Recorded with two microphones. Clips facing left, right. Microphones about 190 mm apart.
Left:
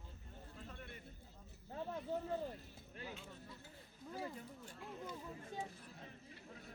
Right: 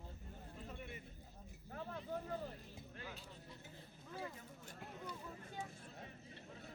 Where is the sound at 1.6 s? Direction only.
20° left (ahead or behind).